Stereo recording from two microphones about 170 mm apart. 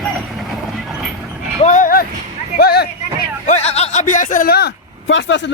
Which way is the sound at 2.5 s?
70° left (ahead or behind).